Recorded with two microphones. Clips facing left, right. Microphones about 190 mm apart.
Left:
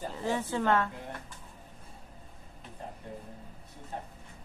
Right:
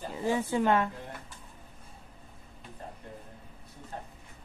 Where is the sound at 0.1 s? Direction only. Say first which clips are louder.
Right 5 dB; 15° right (ahead or behind).